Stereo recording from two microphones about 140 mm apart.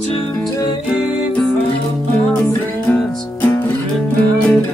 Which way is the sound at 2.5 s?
15° left (ahead or behind).